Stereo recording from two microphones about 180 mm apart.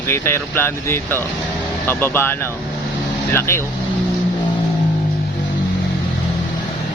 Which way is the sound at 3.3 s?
15° left (ahead or behind).